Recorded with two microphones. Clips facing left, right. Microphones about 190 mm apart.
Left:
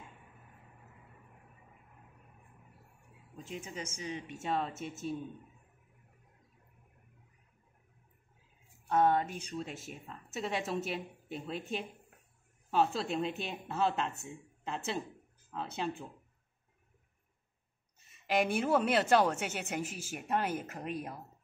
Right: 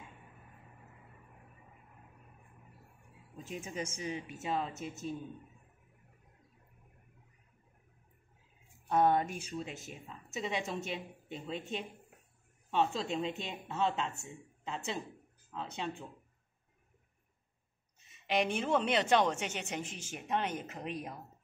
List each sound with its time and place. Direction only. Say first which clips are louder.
4.0 s a woman's voice: right 1 dB; 5° right (ahead or behind)
8.8 s a woman's voice: even; 15° right (ahead or behind); by 16.1 s 5° left (ahead or behind)
18.1 s a woman's voice: left 2 dB; 5° left (ahead or behind)